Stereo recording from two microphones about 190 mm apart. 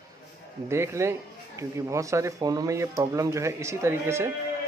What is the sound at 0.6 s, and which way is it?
A man's voice, 15° right (ahead or behind).